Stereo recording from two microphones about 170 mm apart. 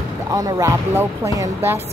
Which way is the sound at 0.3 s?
20° right (ahead or behind).